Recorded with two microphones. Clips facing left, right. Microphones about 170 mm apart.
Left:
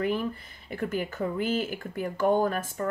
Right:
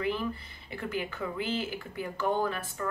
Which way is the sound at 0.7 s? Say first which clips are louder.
Left 4 dB; 50° left (ahead or behind).